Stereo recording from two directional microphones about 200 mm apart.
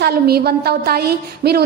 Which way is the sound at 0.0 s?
50° right (ahead or behind).